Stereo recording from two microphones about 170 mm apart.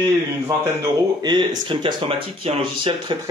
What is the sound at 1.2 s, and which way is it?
Speech, 25° right (ahead or behind).